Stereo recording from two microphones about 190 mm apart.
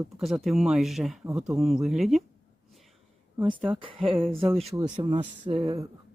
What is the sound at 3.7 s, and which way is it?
Speech, 30° right (ahead or behind).